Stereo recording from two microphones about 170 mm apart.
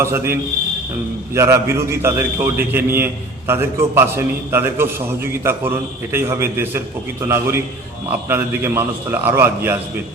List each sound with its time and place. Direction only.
0.0 s a man's voice: 15° right (ahead or behind)